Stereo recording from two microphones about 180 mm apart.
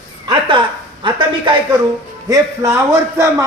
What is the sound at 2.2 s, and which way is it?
A man's voice, 20° right (ahead or behind).